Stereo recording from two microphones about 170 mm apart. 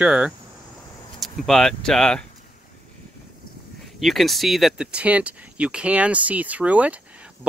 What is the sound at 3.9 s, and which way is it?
Speech, centre (ahead or behind).